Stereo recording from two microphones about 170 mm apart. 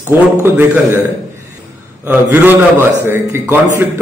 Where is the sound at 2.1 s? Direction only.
10° right (ahead or behind).